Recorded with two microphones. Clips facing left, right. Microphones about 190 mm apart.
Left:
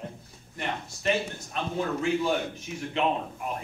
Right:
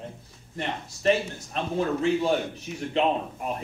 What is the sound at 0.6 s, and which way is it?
A man's voice, 35° right (ahead or behind).